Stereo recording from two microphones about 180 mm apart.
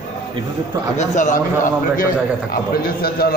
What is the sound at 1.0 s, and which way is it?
A man's voice, 45° left (ahead or behind).